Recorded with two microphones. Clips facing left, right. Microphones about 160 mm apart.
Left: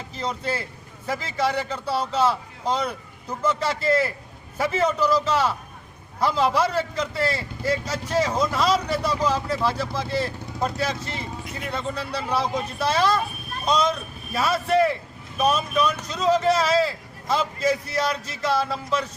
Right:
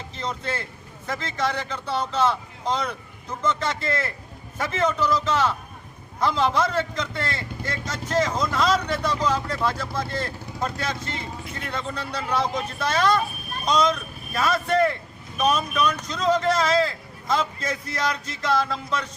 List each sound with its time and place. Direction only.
0.2 s speech: 10° left (ahead or behind)